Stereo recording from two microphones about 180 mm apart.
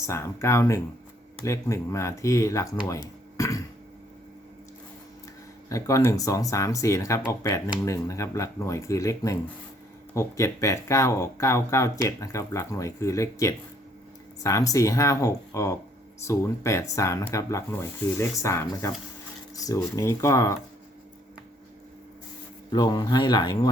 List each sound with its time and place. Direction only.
0.0 s speech: 15° left (ahead or behind)
5.6 s speech: 20° left (ahead or behind)
22.7 s speech: 20° left (ahead or behind)